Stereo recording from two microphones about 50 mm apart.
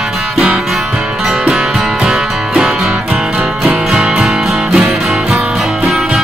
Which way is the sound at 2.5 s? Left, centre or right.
Centre.